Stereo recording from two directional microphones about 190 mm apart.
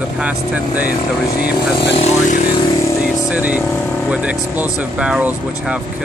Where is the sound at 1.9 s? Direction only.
40° left (ahead or behind).